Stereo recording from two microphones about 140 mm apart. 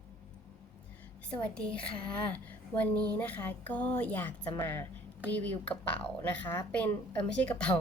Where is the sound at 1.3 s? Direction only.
5° left (ahead or behind).